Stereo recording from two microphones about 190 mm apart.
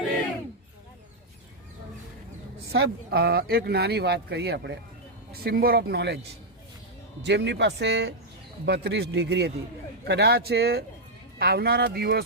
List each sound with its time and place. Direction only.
2.7 s speech: 90° right
3.2 s speech: 55° right (ahead or behind)
5.3 s speech: 55° right (ahead or behind)
7.2 s speech: 65° right (ahead or behind)